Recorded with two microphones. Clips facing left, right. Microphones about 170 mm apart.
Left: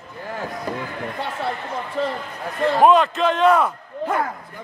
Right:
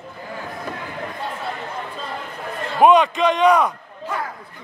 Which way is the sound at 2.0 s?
70° left (ahead or behind).